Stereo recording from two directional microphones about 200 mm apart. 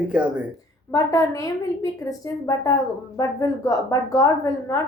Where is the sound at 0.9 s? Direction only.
15° left (ahead or behind).